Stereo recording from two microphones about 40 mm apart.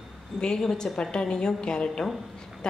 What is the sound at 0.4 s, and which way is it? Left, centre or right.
Speech, centre.